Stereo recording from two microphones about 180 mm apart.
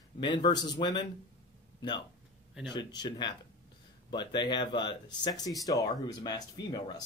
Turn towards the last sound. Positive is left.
turn(degrees=20)  # may be behind; listen again after turning